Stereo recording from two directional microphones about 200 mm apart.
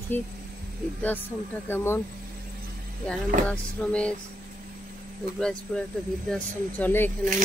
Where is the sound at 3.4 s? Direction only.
5° left (ahead or behind).